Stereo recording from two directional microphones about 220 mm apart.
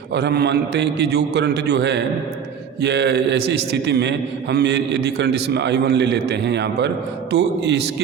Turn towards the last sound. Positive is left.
turn(degrees=-50)  # may be behind; listen again after turning